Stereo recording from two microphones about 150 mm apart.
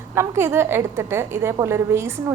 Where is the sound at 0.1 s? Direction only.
15° right (ahead or behind).